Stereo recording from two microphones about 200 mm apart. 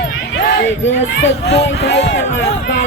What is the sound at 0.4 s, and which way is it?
Speech, 65° left (ahead or behind).